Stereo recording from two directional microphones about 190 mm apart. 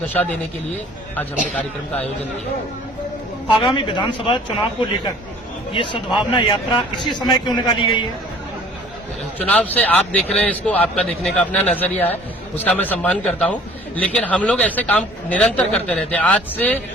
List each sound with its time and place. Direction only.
0.1 s a man's voice: 10° left (ahead or behind)
3.6 s a man's voice: 25° left (ahead or behind)
5.7 s a man's voice: 25° left (ahead or behind)
9.4 s a man's voice: 10° left (ahead or behind)